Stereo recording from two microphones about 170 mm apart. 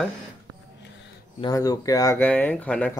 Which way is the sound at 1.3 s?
20° left (ahead or behind).